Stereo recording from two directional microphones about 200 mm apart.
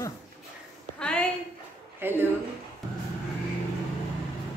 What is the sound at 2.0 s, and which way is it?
Speech, 10° right (ahead or behind).